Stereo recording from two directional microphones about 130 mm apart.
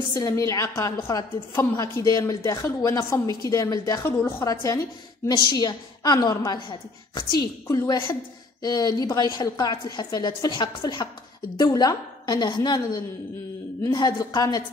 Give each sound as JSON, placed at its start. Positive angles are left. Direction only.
{"t": 0.1, "sound": "a woman's voice", "side_deg": 25}